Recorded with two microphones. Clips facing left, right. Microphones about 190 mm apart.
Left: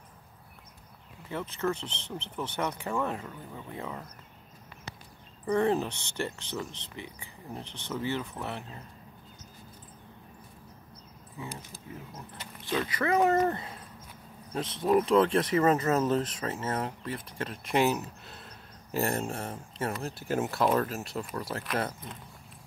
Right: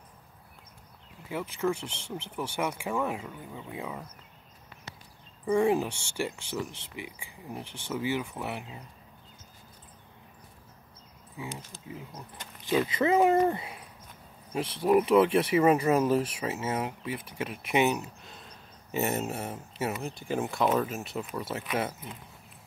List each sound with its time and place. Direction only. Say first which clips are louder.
1.3 s speech: right 2 dB; 10° right (ahead or behind)
5.5 s speech: right 2 dB; 10° right (ahead or behind)
11.3 s speech: right 1 dB; 15° right (ahead or behind)
12.6 s speech: right 4 dB; 20° right (ahead or behind)